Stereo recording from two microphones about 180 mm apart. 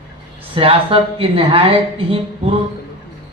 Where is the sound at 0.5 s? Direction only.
30° right (ahead or behind).